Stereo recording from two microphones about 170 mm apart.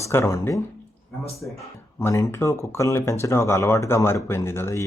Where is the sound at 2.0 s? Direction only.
20° left (ahead or behind).